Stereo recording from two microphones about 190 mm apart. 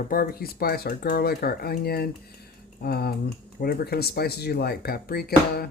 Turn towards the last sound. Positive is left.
turn(degrees=55)  # may be behind; listen again after turning